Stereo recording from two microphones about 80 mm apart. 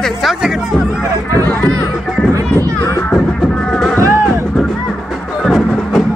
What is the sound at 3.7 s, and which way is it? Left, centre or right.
Music, centre.